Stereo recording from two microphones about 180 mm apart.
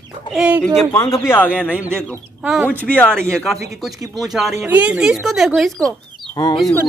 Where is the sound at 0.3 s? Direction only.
5° right (ahead or behind).